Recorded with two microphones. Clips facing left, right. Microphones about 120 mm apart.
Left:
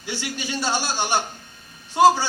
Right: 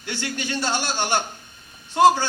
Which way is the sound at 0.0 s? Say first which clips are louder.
Right 1 dB; 15° left (ahead or behind).